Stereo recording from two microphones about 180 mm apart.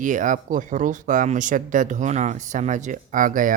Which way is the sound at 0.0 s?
45° right (ahead or behind).